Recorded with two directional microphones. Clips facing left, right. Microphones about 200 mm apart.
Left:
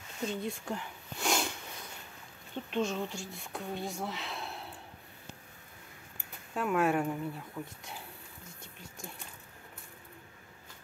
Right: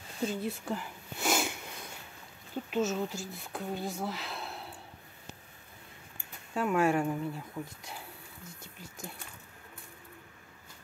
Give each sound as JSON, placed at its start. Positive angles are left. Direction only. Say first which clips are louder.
{"t": 0.2, "sound": "a sound", "louder": "right 2 dB", "side_deg": -5}
{"t": 2.5, "sound": "speech", "louder": "right 2 dB", "side_deg": -5}
{"t": 6.5, "sound": "speech", "louder": "right 1 dB", "side_deg": 0}